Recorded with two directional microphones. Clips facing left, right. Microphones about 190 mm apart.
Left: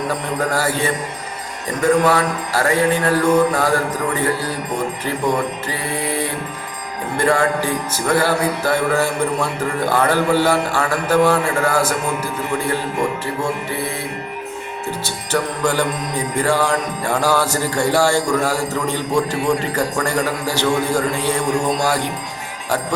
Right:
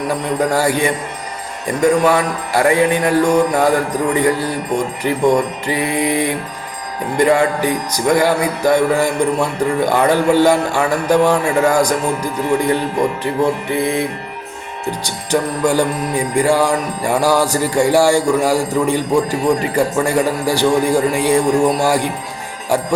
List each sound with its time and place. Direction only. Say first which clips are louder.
0.5 s music: right 4 dB; 15° right (ahead or behind)
5.6 s music: right 6 dB; 15° right (ahead or behind)
15.0 s music: right 4 dB; 15° right (ahead or behind)